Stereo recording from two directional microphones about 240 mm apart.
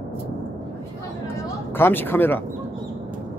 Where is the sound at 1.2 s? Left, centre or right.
Centre.